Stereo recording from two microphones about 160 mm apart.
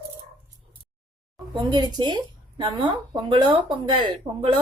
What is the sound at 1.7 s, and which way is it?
A woman's voice, 25° right (ahead or behind).